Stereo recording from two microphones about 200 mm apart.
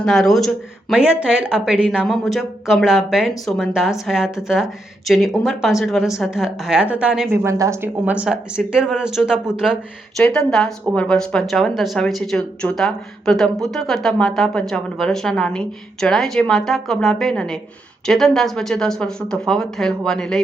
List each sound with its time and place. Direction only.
0.0 s speech: centre (ahead or behind)